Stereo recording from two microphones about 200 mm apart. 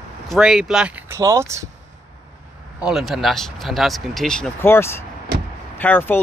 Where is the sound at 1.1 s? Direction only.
15° right (ahead or behind).